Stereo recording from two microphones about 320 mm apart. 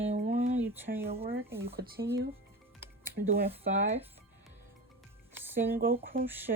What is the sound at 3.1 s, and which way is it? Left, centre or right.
Speech, right.